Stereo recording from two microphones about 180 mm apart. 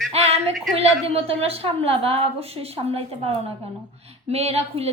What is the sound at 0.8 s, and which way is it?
A woman's voice, 35° right (ahead or behind).